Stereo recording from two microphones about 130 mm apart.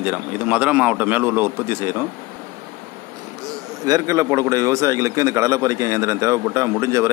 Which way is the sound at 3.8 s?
25° right (ahead or behind).